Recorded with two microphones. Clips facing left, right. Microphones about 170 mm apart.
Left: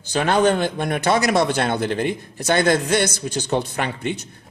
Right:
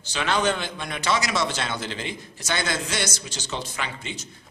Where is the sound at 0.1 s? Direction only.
50° left (ahead or behind).